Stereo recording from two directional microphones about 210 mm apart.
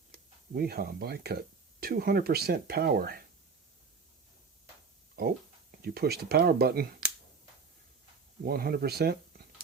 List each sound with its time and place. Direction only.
0.5 s speech: 45° right (ahead or behind)
5.8 s speech: 45° right (ahead or behind)
8.4 s speech: 45° right (ahead or behind)